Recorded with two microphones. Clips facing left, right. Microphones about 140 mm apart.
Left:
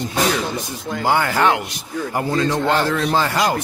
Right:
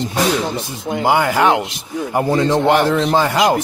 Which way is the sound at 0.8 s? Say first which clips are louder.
Right 4 dB; 20° right (ahead or behind).